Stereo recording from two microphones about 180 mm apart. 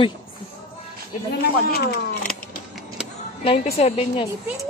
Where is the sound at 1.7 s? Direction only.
60° left (ahead or behind).